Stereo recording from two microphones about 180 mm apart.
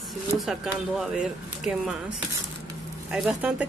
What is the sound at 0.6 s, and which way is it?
Speech, 5° right (ahead or behind).